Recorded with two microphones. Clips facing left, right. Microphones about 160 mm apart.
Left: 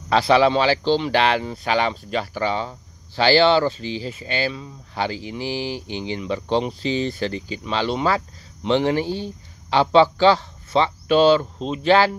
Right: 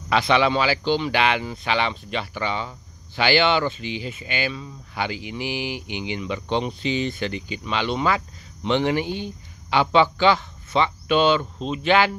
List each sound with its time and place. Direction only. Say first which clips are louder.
0.1 s speech: left 3 dB; 35° left (ahead or behind)